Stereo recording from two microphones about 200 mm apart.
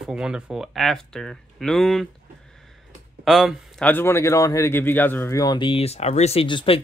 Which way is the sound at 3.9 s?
10° left (ahead or behind).